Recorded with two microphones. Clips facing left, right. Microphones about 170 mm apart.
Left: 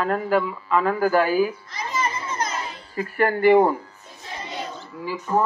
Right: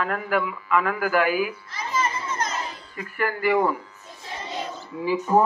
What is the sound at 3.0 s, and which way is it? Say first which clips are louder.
Speech: left 6 dB; 35° left (ahead or behind).